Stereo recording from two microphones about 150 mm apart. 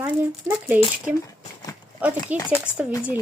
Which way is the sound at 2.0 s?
10° right (ahead or behind).